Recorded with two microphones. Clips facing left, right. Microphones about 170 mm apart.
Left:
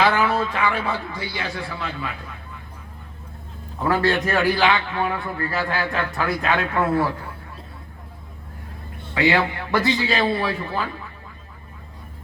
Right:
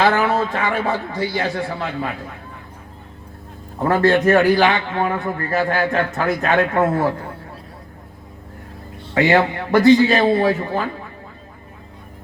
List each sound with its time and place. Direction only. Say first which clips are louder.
0.0 s a man's voice: right 3 dB; 45° right (ahead or behind)
3.8 s a man's voice: right 5 dB; 45° right (ahead or behind)
9.1 s a man's voice: right 4 dB; 45° right (ahead or behind)